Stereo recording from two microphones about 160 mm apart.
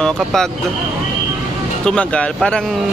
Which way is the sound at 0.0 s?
5° left (ahead or behind).